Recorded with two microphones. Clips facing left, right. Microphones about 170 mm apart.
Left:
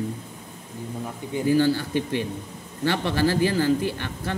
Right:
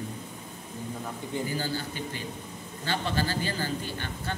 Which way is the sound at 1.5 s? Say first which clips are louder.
Left 12 dB; 85° left.